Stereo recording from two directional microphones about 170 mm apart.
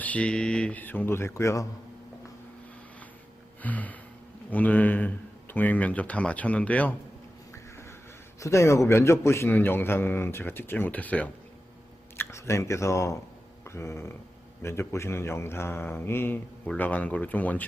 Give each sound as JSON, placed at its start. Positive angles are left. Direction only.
{"t": 0.0, "sound": "speech", "side_deg": 10}
{"t": 3.6, "sound": "speech", "side_deg": 10}
{"t": 7.5, "sound": "a sound", "side_deg": 15}
{"t": 8.4, "sound": "speech", "side_deg": 15}
{"t": 13.7, "sound": "a sound", "side_deg": 15}
{"t": 14.6, "sound": "speech", "side_deg": 15}